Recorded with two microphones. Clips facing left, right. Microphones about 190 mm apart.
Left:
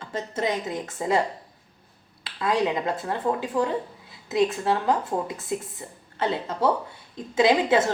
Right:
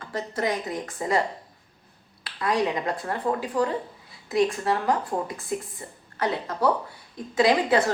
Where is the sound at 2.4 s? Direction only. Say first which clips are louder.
Left 1 dB; 25° left (ahead or behind).